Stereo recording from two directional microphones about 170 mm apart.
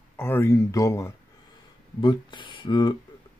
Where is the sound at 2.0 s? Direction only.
30° left (ahead or behind).